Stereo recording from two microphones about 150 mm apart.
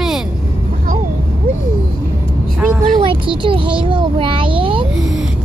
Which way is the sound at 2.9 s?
35° right (ahead or behind).